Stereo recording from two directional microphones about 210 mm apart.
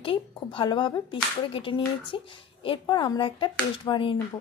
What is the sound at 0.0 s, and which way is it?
Speech, 25° left (ahead or behind).